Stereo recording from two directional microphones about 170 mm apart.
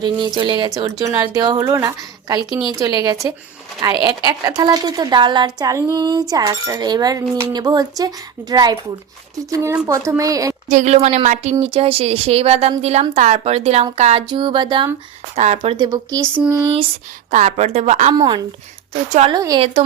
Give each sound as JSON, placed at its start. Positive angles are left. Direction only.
{"t": 0.0, "sound": "cutlery", "side_deg": -25}
{"t": 9.5, "sound": "speech", "side_deg": -15}
{"t": 10.1, "sound": "cutlery", "side_deg": -20}
{"t": 10.7, "sound": "speech", "side_deg": -45}
{"t": 13.9, "sound": "cutlery", "side_deg": -35}
{"t": 15.4, "sound": "speech", "side_deg": -40}
{"t": 15.8, "sound": "cutlery", "side_deg": -20}
{"t": 16.3, "sound": "speech", "side_deg": -10}
{"t": 17.3, "sound": "speech", "side_deg": -40}
{"t": 18.1, "sound": "cutlery", "side_deg": -25}